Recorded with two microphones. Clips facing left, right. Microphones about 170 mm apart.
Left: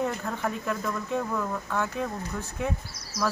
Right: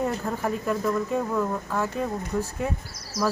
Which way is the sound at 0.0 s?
10° right (ahead or behind).